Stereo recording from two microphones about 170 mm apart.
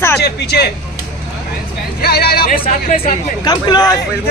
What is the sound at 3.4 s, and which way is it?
Speech, 25° left (ahead or behind).